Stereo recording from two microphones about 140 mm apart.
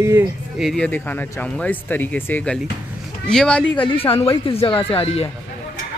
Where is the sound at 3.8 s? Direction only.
40° left (ahead or behind).